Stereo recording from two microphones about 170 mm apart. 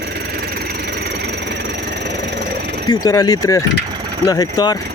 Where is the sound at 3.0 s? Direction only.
20° left (ahead or behind).